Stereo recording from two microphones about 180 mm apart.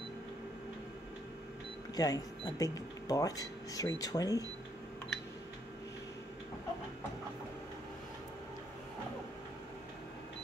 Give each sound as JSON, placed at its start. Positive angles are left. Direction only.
{"t": 2.0, "sound": "speech", "side_deg": 20}